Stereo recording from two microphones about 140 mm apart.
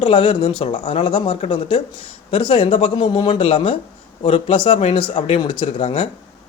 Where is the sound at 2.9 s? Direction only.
35° left (ahead or behind).